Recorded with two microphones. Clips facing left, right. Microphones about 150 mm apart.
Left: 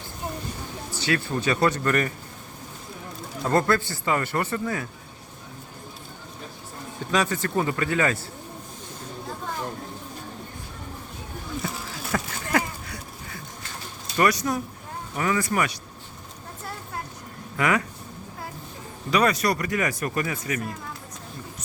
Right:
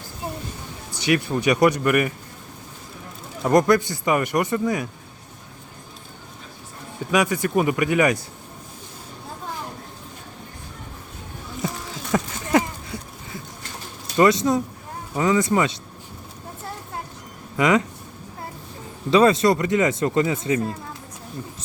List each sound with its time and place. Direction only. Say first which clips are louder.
0.9 s speech: right 5 dB; 15° right (ahead or behind)
3.4 s speech: right 5 dB; 15° right (ahead or behind)
7.1 s speech: right 4 dB; 10° right (ahead or behind)
11.6 s a sound: right 3 dB; 20° right (ahead or behind)
14.2 s speech: right 5 dB; 20° right (ahead or behind)
17.6 s speech: right 5 dB; 20° right (ahead or behind)
19.1 s speech: right 6 dB; 25° right (ahead or behind)